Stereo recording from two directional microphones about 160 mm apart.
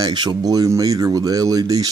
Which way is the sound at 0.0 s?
25° right (ahead or behind).